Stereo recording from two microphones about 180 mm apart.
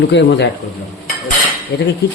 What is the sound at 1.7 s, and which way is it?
Speech, 65° left (ahead or behind).